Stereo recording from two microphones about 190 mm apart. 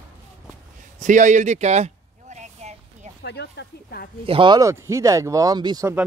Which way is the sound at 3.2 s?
65° left (ahead or behind).